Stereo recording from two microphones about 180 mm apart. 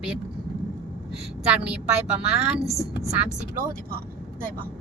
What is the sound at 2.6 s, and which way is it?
Speech, 20° left (ahead or behind).